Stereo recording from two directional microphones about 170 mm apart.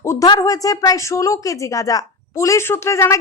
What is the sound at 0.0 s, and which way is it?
A woman's voice, 20° left (ahead or behind).